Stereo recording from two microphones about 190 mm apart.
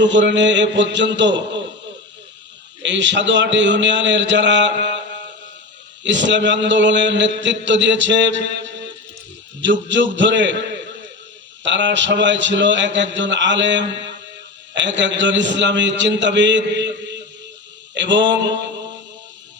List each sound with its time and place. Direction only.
0.0 s a man's voice: 75° right (ahead or behind)
2.8 s a man's voice: 75° right (ahead or behind)